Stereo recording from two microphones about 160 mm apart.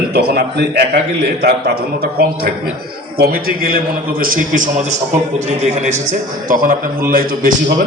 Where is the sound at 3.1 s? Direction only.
70° right (ahead or behind).